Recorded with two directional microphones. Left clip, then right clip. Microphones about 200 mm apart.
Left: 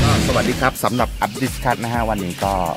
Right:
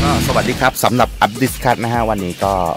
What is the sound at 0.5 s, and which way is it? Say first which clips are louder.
Speech: right 5 dB; 50° right (ahead or behind).